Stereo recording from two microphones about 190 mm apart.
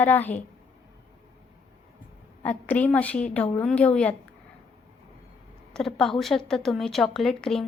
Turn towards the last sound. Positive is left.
turn(degrees=0)  # may be behind; listen again after turning